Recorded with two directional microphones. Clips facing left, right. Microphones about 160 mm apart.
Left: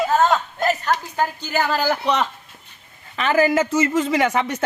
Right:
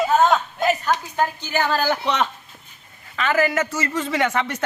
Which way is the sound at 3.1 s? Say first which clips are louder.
Left 3 dB; 30° left (ahead or behind).